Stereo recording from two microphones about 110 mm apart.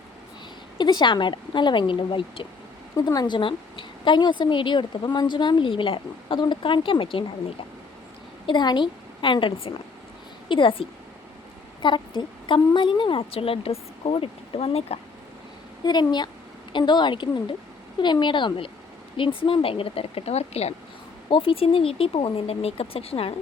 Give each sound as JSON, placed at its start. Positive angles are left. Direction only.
{"t": 0.8, "sound": "a woman's voice", "side_deg": 45}
{"t": 3.1, "sound": "a woman's voice", "side_deg": 40}
{"t": 8.4, "sound": "a woman's voice", "side_deg": 45}
{"t": 15.8, "sound": "a woman's voice", "side_deg": 40}
{"t": 21.2, "sound": "speech", "side_deg": 55}